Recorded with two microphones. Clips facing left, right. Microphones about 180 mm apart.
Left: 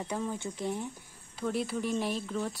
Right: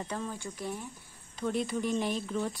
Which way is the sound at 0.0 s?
10° left (ahead or behind).